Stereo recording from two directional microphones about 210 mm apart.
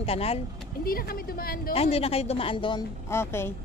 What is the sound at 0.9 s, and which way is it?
Speech, 45° left (ahead or behind).